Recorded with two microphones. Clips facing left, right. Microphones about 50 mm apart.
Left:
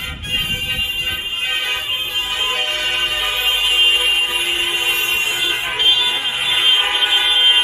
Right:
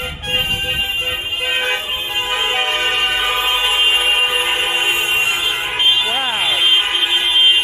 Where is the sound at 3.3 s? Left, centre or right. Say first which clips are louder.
Right 1 dB; right.